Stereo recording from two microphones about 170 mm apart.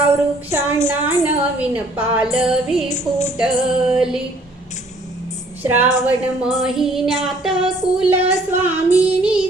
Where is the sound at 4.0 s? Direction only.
5° right (ahead or behind).